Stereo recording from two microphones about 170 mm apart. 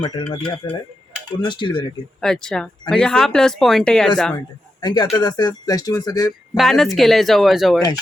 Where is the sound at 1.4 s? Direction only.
30° left (ahead or behind).